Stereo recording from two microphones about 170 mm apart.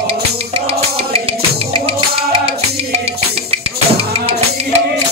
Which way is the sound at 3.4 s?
35° right (ahead or behind).